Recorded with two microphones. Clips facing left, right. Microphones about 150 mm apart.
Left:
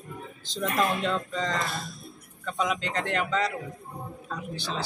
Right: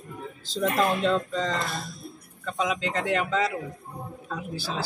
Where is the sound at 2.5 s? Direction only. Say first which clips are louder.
Right 1 dB; 5° right (ahead or behind).